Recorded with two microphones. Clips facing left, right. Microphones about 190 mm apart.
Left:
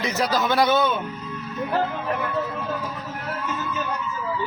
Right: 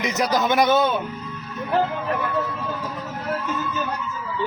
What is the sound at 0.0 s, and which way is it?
Speech, 20° right (ahead or behind).